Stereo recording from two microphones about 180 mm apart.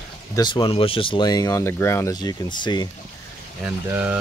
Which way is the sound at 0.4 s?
25° left (ahead or behind).